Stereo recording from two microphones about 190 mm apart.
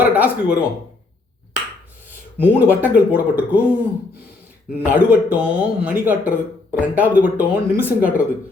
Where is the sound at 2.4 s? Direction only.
10° right (ahead or behind).